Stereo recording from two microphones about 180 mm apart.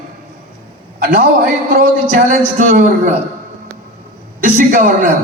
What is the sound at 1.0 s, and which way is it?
A man's voice, 55° right (ahead or behind).